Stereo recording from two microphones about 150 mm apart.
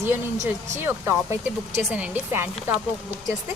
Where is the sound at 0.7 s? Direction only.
15° right (ahead or behind).